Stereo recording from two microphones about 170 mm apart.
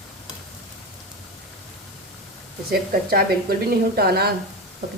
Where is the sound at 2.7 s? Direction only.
65° right (ahead or behind).